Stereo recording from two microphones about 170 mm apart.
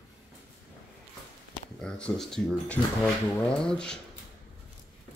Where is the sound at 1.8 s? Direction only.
5° left (ahead or behind).